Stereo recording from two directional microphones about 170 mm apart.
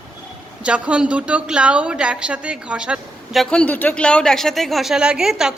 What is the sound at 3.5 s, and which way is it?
Speech, 10° left (ahead or behind).